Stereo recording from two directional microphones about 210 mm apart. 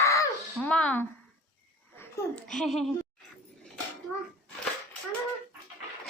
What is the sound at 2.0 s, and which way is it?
Speech, 5° left (ahead or behind).